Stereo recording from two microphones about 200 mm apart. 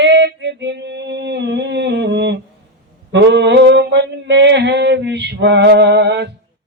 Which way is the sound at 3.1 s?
60° right (ahead or behind).